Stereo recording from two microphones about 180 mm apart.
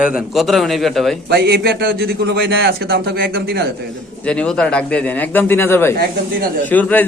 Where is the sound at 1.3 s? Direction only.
60° right (ahead or behind).